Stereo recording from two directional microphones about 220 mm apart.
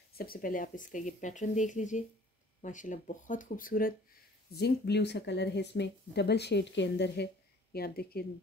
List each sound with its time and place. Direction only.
0.1 s speech: 40° left (ahead or behind)